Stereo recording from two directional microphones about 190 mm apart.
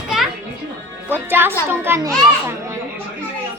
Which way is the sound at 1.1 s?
10° right (ahead or behind).